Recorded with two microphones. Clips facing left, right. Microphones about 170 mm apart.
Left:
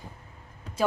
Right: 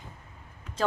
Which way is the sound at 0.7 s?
35° left (ahead or behind).